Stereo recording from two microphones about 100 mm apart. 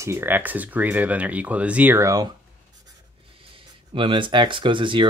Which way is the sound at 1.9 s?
30° right (ahead or behind).